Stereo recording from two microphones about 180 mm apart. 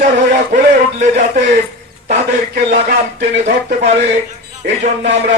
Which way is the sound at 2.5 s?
55° right (ahead or behind).